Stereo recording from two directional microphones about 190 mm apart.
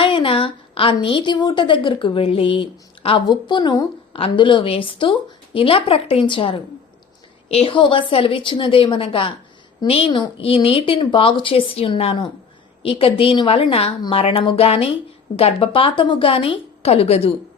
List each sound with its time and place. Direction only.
0.0 s a woman's voice: 30° left (ahead or behind)